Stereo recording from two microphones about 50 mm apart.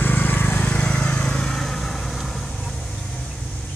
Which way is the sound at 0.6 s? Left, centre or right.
Left.